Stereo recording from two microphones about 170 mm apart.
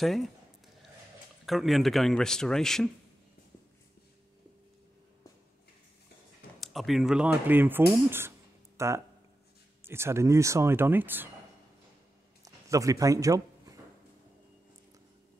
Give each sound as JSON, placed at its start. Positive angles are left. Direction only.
{"t": 0.0, "sound": "speech", "side_deg": 0}
{"t": 1.4, "sound": "speech", "side_deg": 0}
{"t": 6.6, "sound": "speech", "side_deg": 0}
{"t": 12.4, "sound": "a sound", "side_deg": -20}